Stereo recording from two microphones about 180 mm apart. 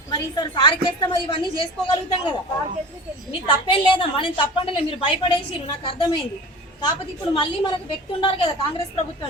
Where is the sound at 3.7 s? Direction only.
30° left (ahead or behind).